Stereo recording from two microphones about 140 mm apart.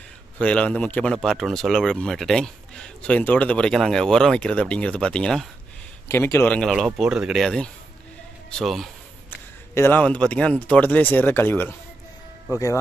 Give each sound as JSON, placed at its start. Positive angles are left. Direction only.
{"t": 0.4, "sound": "speech", "side_deg": 10}
{"t": 6.0, "sound": "speech", "side_deg": 20}
{"t": 7.0, "sound": "speech", "side_deg": -5}
{"t": 9.8, "sound": "speech", "side_deg": 15}